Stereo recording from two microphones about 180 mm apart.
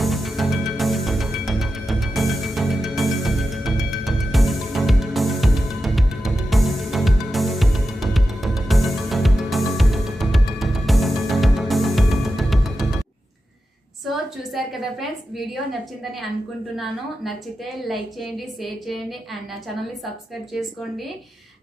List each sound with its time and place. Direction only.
0.0 s music: centre (ahead or behind)
14.5 s a sound: centre (ahead or behind)
16.7 s a woman's voice: centre (ahead or behind)